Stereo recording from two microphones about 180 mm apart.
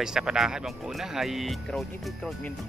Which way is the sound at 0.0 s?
5° right (ahead or behind).